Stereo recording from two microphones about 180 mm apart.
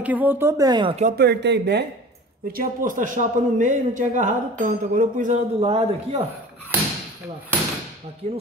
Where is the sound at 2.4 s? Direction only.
55° right (ahead or behind); by 6.2 s 35° right (ahead or behind).